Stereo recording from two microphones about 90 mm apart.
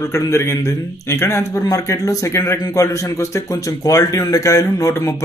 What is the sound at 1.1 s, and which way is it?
Speech, 30° left (ahead or behind).